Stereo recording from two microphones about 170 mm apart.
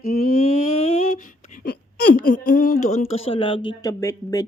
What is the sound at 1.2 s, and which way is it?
Whimper, 65° left (ahead or behind).